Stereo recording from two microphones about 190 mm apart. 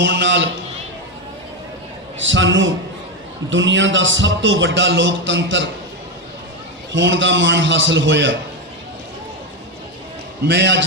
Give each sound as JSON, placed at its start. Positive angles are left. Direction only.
{"t": 0.0, "sound": "speech", "side_deg": -70}
{"t": 2.1, "sound": "speech", "side_deg": -80}
{"t": 6.9, "sound": "speech", "side_deg": -75}
{"t": 10.4, "sound": "speech", "side_deg": -65}